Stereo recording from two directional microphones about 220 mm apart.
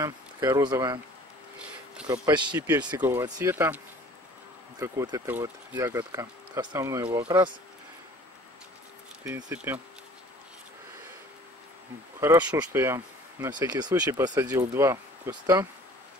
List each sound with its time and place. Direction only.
0.0 s speech: 20° right (ahead or behind)
2.0 s speech: 15° right (ahead or behind)
9.2 s speech: 10° right (ahead or behind)
12.2 s speech: 10° right (ahead or behind)